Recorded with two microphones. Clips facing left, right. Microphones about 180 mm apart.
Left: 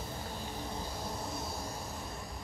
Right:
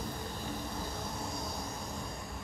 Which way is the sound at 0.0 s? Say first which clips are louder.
Right 1 dB; 15° right (ahead or behind).